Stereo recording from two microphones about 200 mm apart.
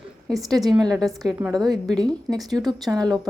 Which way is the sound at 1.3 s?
15° right (ahead or behind).